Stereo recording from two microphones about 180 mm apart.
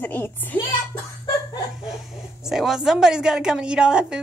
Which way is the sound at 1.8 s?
5° right (ahead or behind).